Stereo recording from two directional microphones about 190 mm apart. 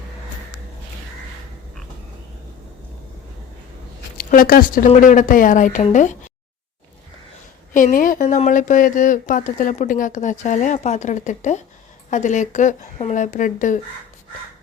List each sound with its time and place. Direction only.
4.2 s speech: 50° left (ahead or behind)
7.7 s speech: 45° left (ahead or behind)